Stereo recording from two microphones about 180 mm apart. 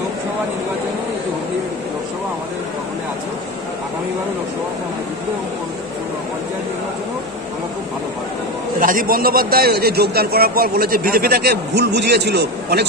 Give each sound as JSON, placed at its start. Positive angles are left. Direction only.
{"t": 8.7, "sound": "a man's voice", "side_deg": -50}